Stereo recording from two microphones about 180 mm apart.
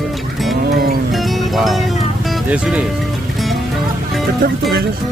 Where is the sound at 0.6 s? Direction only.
55° right (ahead or behind).